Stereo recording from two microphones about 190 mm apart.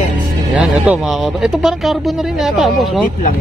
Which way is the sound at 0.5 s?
5° right (ahead or behind).